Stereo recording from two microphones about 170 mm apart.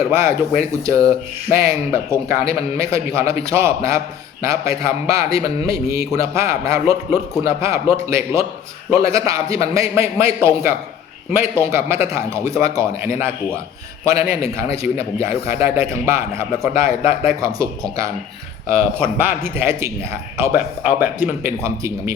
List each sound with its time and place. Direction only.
0.1 s a man's voice: 15° right (ahead or behind)
18.7 s a man's voice: 15° right (ahead or behind)